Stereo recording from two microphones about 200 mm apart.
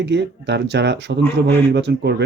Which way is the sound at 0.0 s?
60° right (ahead or behind).